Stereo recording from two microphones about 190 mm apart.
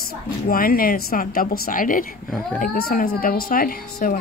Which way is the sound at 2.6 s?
50° left (ahead or behind).